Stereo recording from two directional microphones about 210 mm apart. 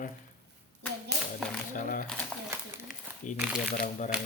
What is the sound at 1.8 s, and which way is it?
Speech, 40° left (ahead or behind).